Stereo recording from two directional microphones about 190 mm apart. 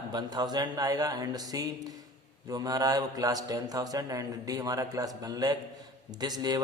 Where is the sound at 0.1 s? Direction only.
20° right (ahead or behind).